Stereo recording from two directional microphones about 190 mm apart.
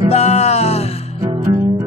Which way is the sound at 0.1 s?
35° left (ahead or behind).